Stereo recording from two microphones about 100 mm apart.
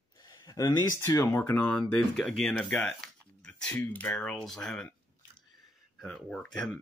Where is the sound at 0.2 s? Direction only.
40° left (ahead or behind).